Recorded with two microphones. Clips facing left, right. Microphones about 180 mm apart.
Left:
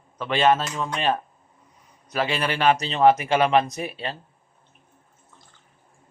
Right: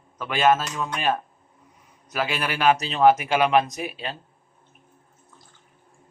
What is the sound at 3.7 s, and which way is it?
Speech, 35° left (ahead or behind).